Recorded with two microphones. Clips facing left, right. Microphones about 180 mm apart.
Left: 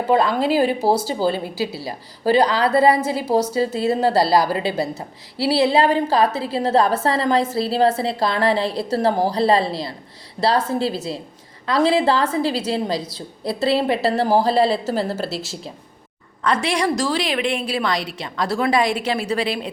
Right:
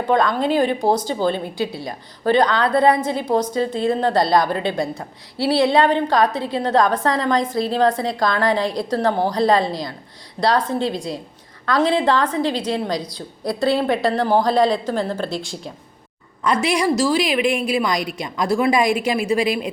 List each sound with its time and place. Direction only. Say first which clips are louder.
0.1 s a woman's voice: even; 5° left (ahead or behind)
8.5 s a woman's voice: right 1 dB; 30° left (ahead or behind)
8.8 s a woman's voice: even; 5° left (ahead or behind)
9.0 s a woman's voice: even; 30° left (ahead or behind)
10.6 s a woman's voice: even; 5° left (ahead or behind)
16.4 s a woman's voice: right 1 dB; 10° right (ahead or behind)